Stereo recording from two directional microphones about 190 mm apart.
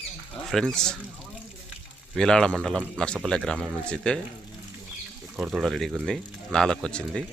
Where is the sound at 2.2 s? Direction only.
5° left (ahead or behind).